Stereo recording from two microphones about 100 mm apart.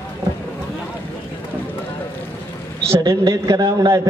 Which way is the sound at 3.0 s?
35° right (ahead or behind).